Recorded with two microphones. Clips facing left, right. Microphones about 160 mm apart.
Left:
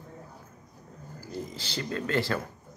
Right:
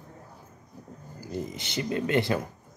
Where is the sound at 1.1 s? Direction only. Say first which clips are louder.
Right 3 dB; 20° right (ahead or behind).